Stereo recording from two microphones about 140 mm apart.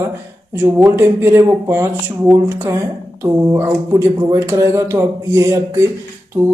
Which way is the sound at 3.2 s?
20° right (ahead or behind).